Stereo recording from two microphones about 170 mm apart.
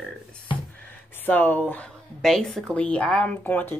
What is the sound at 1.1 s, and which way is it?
Speech, 10° left (ahead or behind).